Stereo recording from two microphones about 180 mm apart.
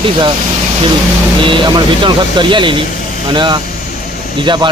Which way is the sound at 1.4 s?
25° right (ahead or behind).